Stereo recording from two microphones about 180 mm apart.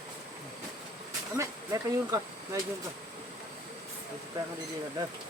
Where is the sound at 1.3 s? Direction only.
15° right (ahead or behind).